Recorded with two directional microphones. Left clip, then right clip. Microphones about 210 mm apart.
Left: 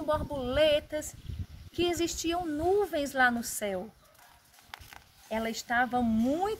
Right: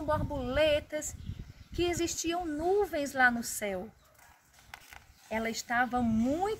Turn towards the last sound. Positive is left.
turn(degrees=0)  # may be behind; listen again after turning